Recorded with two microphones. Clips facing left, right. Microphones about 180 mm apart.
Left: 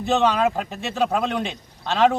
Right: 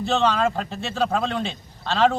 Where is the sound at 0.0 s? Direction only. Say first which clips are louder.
Left 2 dB; 15° left (ahead or behind).